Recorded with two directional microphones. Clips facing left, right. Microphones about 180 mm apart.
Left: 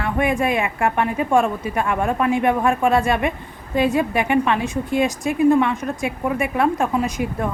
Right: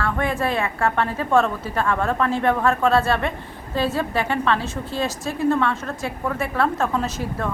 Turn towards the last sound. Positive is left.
turn(degrees=15)  # may be behind; listen again after turning